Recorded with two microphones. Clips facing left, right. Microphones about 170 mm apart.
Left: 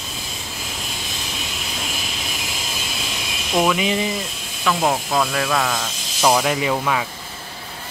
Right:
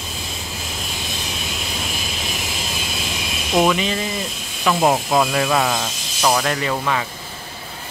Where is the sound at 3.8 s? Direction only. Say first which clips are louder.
Left 2 dB; 15° left (ahead or behind).